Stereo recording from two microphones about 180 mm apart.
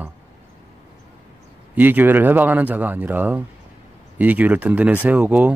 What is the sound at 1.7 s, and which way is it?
Speech, 10° right (ahead or behind).